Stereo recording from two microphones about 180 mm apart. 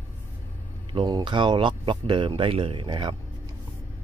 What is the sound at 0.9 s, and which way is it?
Speech, 25° right (ahead or behind).